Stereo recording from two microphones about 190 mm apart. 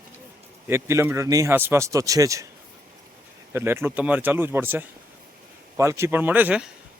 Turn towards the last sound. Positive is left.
turn(degrees=-5)  # may be behind; listen again after turning